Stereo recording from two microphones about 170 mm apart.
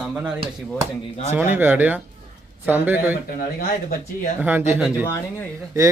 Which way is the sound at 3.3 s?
65° left (ahead or behind).